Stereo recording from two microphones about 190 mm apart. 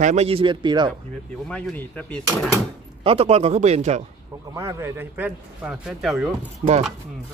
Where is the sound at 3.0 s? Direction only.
30° right (ahead or behind).